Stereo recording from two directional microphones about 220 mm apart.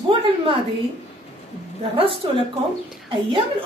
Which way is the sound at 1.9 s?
25° right (ahead or behind).